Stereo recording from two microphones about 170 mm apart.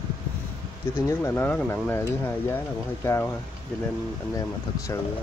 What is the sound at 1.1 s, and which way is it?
Speech, 15° left (ahead or behind).